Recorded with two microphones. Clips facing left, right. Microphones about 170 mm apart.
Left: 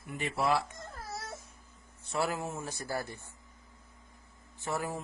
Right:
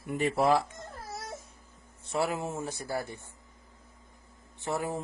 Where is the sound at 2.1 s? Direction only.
20° right (ahead or behind).